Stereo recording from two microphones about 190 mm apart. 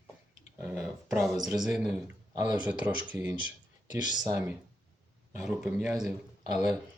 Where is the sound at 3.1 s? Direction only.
5° right (ahead or behind).